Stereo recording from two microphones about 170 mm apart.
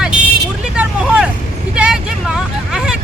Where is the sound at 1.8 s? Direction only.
5° right (ahead or behind).